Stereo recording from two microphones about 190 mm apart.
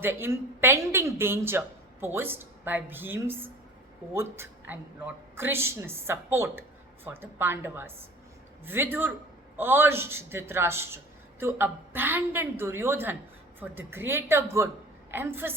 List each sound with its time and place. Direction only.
0.0 s a woman's voice: 10° right (ahead or behind)